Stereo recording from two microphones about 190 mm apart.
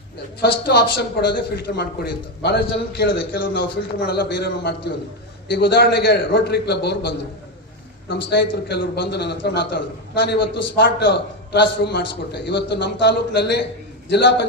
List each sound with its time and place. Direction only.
0.4 s a man's voice: 55° left (ahead or behind)